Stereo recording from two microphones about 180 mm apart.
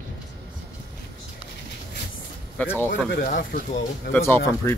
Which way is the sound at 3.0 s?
55° left (ahead or behind).